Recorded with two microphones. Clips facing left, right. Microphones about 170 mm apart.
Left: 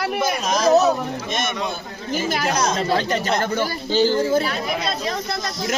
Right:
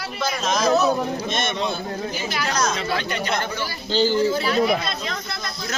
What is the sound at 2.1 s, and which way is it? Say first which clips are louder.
Speech: left 5 dB; 45° left (ahead or behind).